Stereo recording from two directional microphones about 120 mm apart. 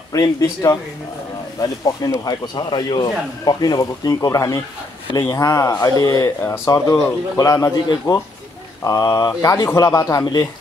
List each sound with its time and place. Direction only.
0.1 s speech: 30° left (ahead or behind)